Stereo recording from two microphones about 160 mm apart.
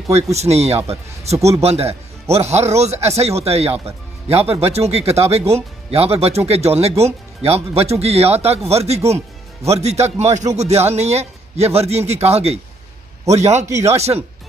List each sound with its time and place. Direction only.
0.1 s a man's voice: 40° right (ahead or behind)